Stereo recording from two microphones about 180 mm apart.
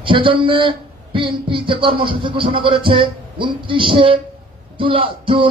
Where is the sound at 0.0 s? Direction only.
30° right (ahead or behind).